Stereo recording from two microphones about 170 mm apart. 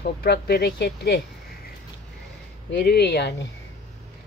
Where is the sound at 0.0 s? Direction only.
65° left (ahead or behind).